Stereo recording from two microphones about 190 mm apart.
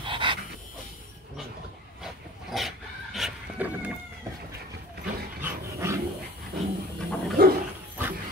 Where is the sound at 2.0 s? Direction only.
Centre (ahead or behind).